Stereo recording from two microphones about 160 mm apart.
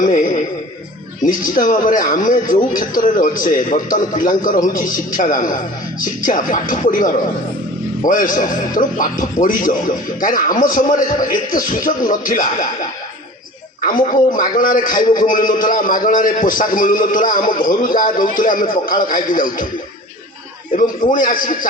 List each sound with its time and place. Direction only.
0.0 s music: 55° left (ahead or behind)
1.5 s a man's voice: 55° left (ahead or behind)
13.8 s a man's voice: 55° left (ahead or behind)
20.7 s a man's voice: 55° left (ahead or behind)